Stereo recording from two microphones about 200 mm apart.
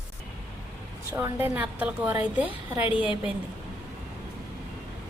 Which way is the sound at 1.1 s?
10° right (ahead or behind).